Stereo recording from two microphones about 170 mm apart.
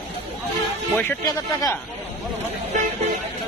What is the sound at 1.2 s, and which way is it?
Speech, 20° left (ahead or behind).